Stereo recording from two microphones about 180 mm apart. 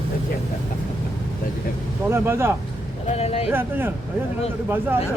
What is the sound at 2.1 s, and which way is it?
Speech, 15° right (ahead or behind).